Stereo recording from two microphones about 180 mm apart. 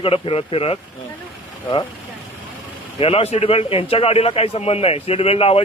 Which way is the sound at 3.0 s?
30° left (ahead or behind).